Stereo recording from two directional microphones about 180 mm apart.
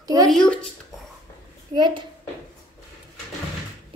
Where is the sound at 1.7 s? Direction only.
25° right (ahead or behind).